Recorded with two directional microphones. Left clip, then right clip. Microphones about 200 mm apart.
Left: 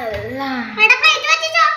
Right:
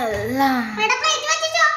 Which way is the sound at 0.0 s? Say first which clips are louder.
Right 3 dB; 30° right (ahead or behind).